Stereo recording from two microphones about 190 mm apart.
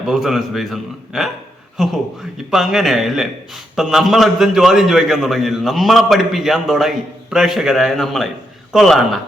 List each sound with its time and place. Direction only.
0.1 s a man's voice: centre (ahead or behind)